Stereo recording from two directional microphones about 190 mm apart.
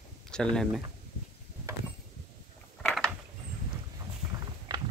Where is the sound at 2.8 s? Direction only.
5° left (ahead or behind).